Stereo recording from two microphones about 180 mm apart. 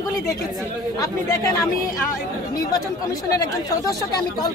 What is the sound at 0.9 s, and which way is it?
Speech, 20° left (ahead or behind).